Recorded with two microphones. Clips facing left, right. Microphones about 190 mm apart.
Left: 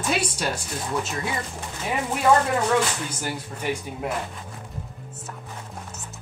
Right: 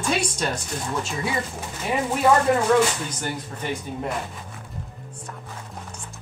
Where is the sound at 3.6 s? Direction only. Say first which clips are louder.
Left 2 dB; 10° left (ahead or behind).